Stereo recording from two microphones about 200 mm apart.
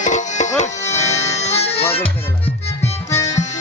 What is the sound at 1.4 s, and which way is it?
Music, 30° left (ahead or behind).